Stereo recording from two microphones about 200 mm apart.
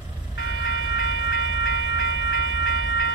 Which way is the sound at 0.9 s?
50° left (ahead or behind).